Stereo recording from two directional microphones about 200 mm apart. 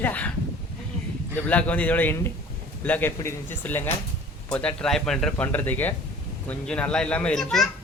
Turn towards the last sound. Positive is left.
turn(degrees=0)  # may be behind; listen again after turning